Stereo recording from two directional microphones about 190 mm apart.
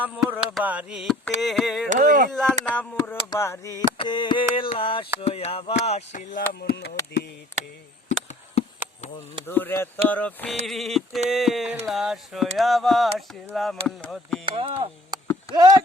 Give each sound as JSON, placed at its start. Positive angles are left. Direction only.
{"t": 0.0, "sound": "mantra", "side_deg": -5}
{"t": 1.9, "sound": "speech", "side_deg": -45}
{"t": 2.3, "sound": "mantra", "side_deg": 5}
{"t": 2.6, "sound": "speech", "side_deg": 10}
{"t": 3.9, "sound": "mantra", "side_deg": 25}
{"t": 5.2, "sound": "speech", "side_deg": 30}
{"t": 6.5, "sound": "speech", "side_deg": 55}
{"t": 8.6, "sound": "chop", "side_deg": 35}
{"t": 9.5, "sound": "speech", "side_deg": 10}
{"t": 10.7, "sound": "mantra", "side_deg": 0}
{"t": 14.4, "sound": "speech", "side_deg": -30}